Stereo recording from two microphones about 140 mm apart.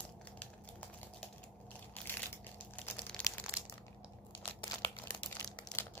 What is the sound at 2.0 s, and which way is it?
Crushing, 10° left (ahead or behind).